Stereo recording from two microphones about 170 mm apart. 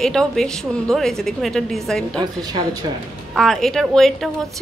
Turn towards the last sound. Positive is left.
turn(degrees=0)  # may be behind; listen again after turning